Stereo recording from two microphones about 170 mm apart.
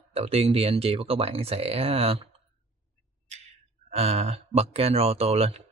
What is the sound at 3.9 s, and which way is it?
Speech, 35° right (ahead or behind).